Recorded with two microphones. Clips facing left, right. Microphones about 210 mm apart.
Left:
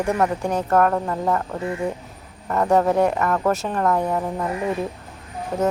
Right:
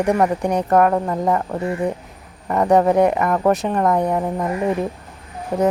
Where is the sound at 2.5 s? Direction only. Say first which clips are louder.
Right 3 dB; 15° right (ahead or behind).